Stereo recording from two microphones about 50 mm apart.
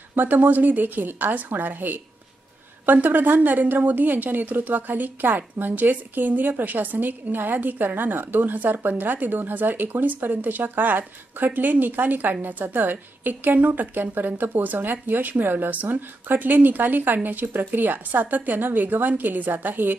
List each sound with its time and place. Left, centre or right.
0.1 s a woman's voice: right